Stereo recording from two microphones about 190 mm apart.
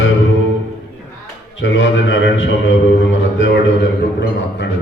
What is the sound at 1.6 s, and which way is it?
A man's voice, 75° left (ahead or behind).